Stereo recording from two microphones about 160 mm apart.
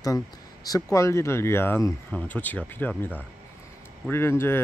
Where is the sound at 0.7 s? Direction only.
20° left (ahead or behind).